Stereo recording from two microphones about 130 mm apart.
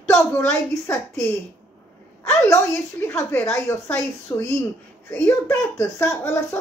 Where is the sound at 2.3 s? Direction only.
20° left (ahead or behind).